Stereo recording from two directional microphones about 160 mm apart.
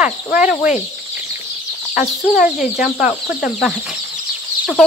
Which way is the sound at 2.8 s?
5° right (ahead or behind).